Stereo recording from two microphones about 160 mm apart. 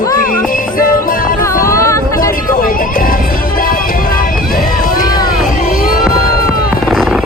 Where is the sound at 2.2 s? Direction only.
60° left (ahead or behind).